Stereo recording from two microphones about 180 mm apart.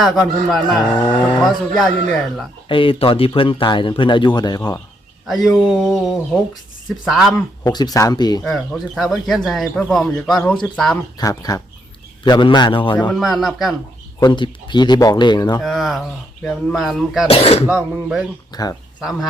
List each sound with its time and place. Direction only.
0.0 s speech: centre (ahead or behind)
2.6 s speech: 30° left (ahead or behind)
5.2 s speech: centre (ahead or behind)
7.3 s speech: 20° left (ahead or behind)
8.4 s speech: centre (ahead or behind)
11.2 s speech: 20° left (ahead or behind)
13.1 s speech: centre (ahead or behind)
14.2 s speech: 25° left (ahead or behind)
15.6 s speech: centre (ahead or behind)
17.2 s speech: 35° left (ahead or behind)
17.7 s speech: 5° right (ahead or behind)
18.5 s speech: 20° left (ahead or behind)
18.9 s speech: 5° right (ahead or behind)